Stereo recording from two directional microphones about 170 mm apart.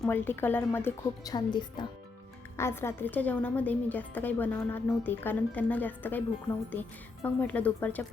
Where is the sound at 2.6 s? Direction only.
15° left (ahead or behind).